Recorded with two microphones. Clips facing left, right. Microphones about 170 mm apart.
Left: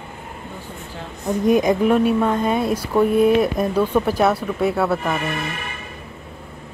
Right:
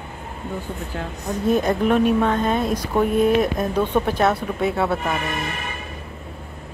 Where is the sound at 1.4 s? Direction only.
10° left (ahead or behind).